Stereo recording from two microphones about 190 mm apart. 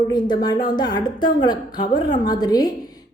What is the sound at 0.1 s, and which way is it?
A woman's voice, 20° left (ahead or behind).